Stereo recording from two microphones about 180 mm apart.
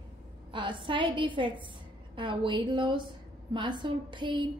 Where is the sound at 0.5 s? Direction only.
25° right (ahead or behind).